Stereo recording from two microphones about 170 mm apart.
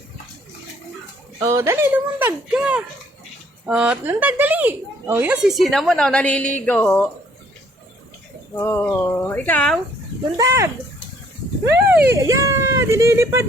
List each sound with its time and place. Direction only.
1.4 s a woman's voice: 20° right (ahead or behind); by 7.1 s 10° left (ahead or behind)
8.5 s speech: 15° left (ahead or behind)
10.3 s speech: 20° right (ahead or behind)